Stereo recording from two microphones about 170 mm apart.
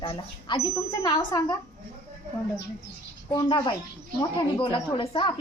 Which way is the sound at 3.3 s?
30° left (ahead or behind).